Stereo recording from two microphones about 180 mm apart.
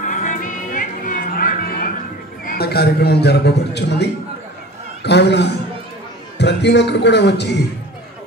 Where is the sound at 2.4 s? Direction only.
55° left (ahead or behind).